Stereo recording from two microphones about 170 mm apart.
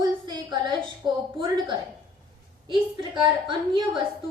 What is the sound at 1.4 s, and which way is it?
A woman's voice, 25° right (ahead or behind).